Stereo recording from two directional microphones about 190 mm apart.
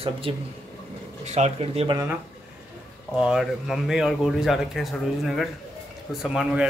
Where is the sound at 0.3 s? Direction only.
30° right (ahead or behind).